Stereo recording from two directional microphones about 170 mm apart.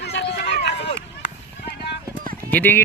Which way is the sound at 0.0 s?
80° left.